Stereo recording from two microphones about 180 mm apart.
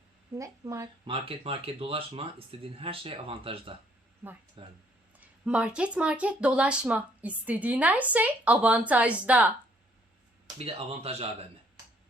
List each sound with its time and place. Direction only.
0.3 s speech: 15° right (ahead or behind)
1.1 s speech: 30° right (ahead or behind)
4.2 s speech: 10° right (ahead or behind)
4.6 s speech: 30° right (ahead or behind)
5.2 s speech: 5° right (ahead or behind)
10.4 s speech: 35° right (ahead or behind)